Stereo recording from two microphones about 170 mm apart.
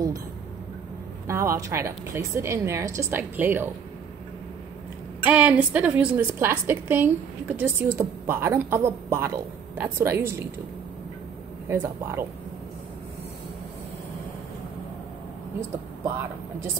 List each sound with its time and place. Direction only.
1.2 s a woman's voice: 15° right (ahead or behind)
5.2 s a woman's voice: 10° right (ahead or behind)
11.7 s a woman's voice: 15° right (ahead or behind)